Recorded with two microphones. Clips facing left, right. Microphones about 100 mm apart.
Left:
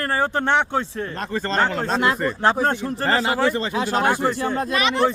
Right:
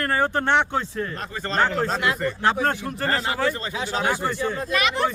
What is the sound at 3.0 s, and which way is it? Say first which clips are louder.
Speech: left 4 dB; 90° left.